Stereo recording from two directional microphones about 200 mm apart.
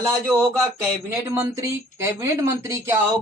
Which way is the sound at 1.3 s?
15° right (ahead or behind).